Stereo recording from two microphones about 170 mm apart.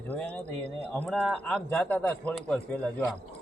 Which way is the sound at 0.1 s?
10° left (ahead or behind).